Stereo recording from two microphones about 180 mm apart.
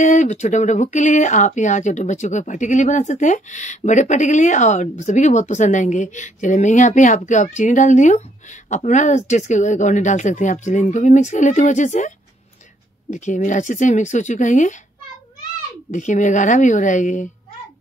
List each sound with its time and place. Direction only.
0.0 s speech: 40° left (ahead or behind)
13.1 s speech: 45° left (ahead or behind)
15.9 s speech: 45° left (ahead or behind)